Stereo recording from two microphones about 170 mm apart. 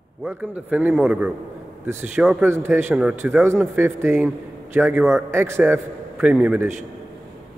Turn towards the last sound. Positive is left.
turn(degrees=-5)  # may be behind; listen again after turning